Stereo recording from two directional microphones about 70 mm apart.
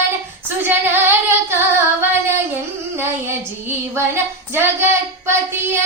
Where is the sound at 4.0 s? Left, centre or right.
Right.